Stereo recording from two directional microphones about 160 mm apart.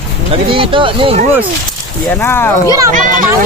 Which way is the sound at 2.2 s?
15° left (ahead or behind).